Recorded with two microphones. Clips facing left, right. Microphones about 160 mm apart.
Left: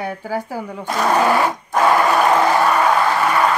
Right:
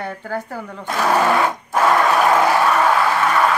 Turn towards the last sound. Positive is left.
turn(degrees=0)  # may be behind; listen again after turning